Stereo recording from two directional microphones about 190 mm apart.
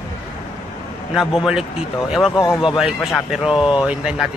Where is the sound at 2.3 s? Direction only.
20° left (ahead or behind).